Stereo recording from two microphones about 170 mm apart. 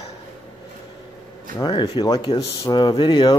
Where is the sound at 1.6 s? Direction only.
30° left (ahead or behind).